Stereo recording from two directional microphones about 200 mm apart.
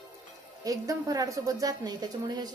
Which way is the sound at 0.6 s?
15° right (ahead or behind).